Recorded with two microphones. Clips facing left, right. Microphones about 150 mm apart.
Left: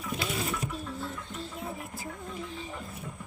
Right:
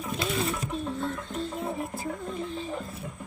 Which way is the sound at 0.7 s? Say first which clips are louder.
Right 6 dB; 25° right (ahead or behind).